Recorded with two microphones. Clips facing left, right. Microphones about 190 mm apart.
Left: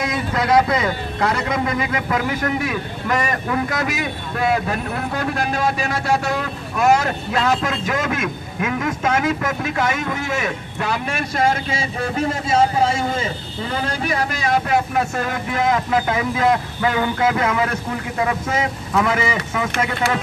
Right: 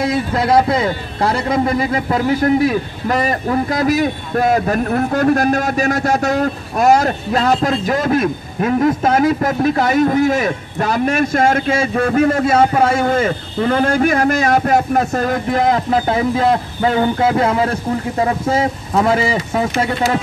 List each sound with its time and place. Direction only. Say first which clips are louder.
0.0 s speech: right 5 dB; 30° right (ahead or behind)